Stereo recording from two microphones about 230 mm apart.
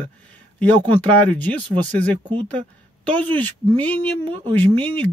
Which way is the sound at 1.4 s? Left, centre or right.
Centre.